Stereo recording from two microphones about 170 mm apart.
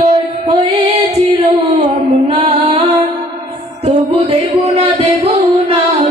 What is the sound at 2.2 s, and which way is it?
Music, 35° right (ahead or behind).